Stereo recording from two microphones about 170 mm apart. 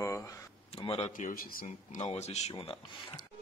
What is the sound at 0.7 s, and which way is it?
Speech, 35° left (ahead or behind).